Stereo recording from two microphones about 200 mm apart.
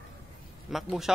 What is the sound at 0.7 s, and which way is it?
Speech, centre (ahead or behind).